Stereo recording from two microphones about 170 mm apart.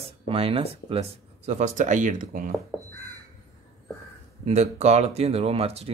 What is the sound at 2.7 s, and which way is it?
Crow, 5° right (ahead or behind).